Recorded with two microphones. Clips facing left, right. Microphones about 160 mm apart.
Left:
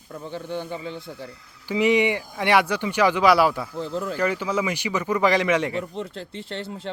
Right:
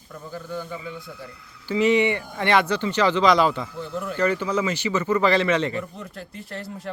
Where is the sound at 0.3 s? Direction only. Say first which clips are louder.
Left 2 dB; 25° left (ahead or behind).